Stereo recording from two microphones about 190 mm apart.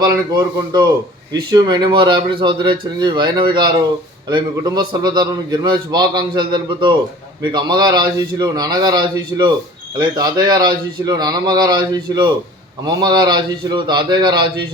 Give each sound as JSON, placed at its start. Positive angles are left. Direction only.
{"t": 0.0, "sound": "a man's voice", "side_deg": -20}